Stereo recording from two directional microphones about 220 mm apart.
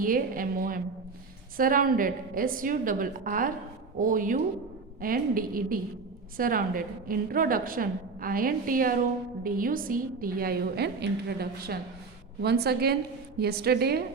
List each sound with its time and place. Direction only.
0.0 s a woman's voice: 40° right (ahead or behind)